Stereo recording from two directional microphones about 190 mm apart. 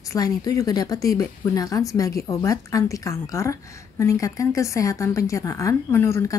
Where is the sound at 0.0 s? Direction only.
20° left (ahead or behind).